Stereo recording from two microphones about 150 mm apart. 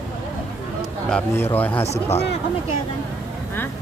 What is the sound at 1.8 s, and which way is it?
Speech, 45° left (ahead or behind).